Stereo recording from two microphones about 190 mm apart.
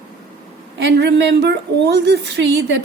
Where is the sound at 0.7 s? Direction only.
60° right (ahead or behind).